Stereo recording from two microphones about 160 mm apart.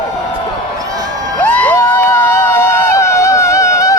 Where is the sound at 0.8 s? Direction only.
25° right (ahead or behind).